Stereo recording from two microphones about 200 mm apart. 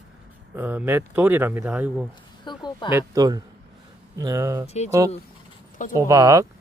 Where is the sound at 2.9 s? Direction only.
15° right (ahead or behind).